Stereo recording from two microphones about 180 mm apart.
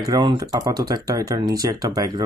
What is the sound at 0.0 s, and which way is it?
Speech, 25° right (ahead or behind).